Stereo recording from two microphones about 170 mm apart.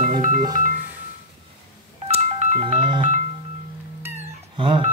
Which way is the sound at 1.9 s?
35° right (ahead or behind).